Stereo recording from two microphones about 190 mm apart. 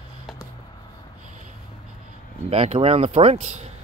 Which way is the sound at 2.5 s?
30° right (ahead or behind).